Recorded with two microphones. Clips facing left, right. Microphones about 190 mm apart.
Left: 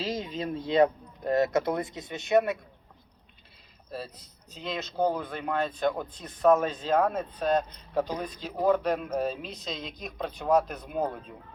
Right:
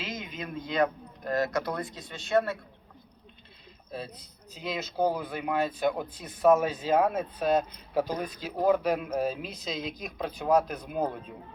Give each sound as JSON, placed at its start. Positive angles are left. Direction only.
{"t": 0.0, "sound": "speech", "side_deg": 35}
{"t": 3.9, "sound": "speech", "side_deg": 0}